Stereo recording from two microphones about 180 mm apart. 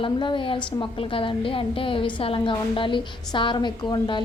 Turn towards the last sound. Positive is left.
turn(degrees=25)  # may be behind; listen again after turning